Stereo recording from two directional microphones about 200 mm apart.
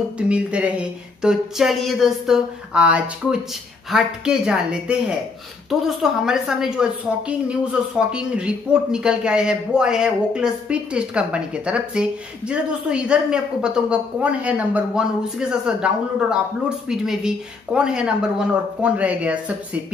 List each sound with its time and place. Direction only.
0.3 s a man's voice: 5° right (ahead or behind)